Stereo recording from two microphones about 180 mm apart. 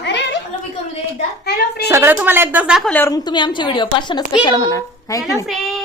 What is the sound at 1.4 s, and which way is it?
Speech, 65° left (ahead or behind).